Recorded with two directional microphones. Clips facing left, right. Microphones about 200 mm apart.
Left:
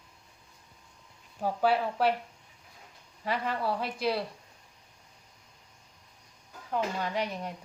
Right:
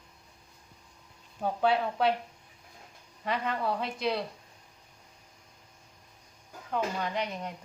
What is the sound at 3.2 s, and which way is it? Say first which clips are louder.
Speech: even; 5° left (ahead or behind).